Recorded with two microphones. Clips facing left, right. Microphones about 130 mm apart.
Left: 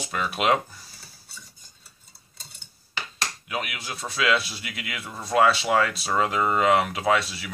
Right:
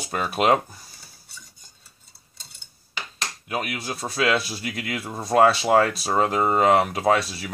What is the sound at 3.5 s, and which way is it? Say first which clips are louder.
Speech: right 6 dB; 40° right (ahead or behind).